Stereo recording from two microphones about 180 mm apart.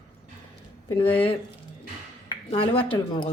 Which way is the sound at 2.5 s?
30° left (ahead or behind).